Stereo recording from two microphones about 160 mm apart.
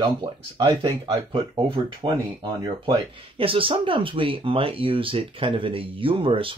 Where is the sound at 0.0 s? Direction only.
25° right (ahead or behind).